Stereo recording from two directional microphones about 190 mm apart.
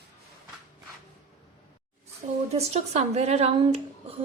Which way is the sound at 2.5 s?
35° right (ahead or behind).